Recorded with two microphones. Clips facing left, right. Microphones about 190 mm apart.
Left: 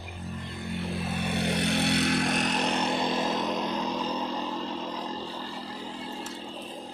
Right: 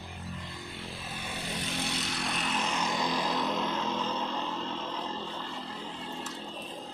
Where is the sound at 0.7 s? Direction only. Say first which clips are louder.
Left 14 dB; 65° left (ahead or behind).